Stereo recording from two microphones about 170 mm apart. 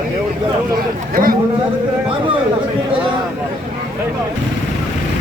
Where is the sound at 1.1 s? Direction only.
55° right (ahead or behind).